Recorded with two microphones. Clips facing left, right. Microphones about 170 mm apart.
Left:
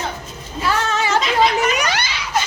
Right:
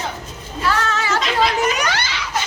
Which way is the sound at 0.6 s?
15° left (ahead or behind).